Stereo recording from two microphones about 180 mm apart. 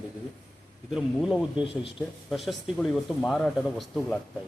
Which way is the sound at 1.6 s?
30° left (ahead or behind).